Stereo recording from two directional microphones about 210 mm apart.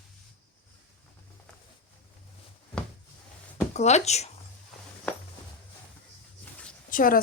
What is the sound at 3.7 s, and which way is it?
Speech, 30° left (ahead or behind).